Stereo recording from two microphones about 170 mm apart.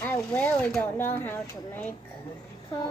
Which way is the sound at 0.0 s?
10° left (ahead or behind).